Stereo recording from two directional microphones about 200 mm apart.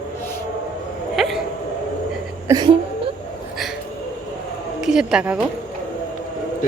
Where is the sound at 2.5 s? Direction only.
20° right (ahead or behind).